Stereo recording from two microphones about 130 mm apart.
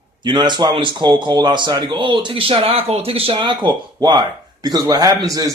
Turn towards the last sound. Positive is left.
turn(degrees=-25)  # may be behind; listen again after turning